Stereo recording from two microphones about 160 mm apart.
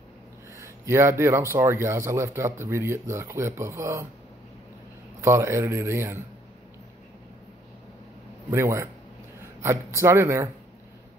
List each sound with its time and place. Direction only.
0.6 s speech: 15° right (ahead or behind)
5.2 s speech: 15° right (ahead or behind)
8.5 s speech: 15° right (ahead or behind)